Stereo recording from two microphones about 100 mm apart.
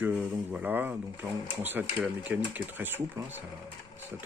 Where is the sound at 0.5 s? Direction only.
15° right (ahead or behind).